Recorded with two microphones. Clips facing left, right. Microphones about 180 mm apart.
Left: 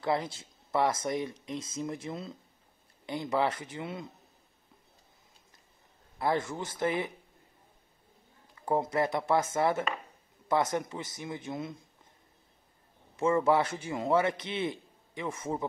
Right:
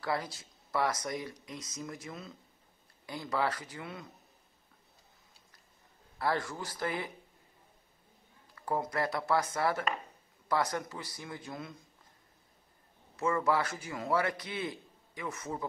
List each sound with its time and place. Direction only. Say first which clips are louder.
0.0 s a man's voice: left 4 dB; 25° left (ahead or behind)
6.1 s a man's voice: left 3 dB; 20° left (ahead or behind)
8.5 s a man's voice: left 5 dB; 25° left (ahead or behind)
13.1 s a man's voice: left 4 dB; 25° left (ahead or behind)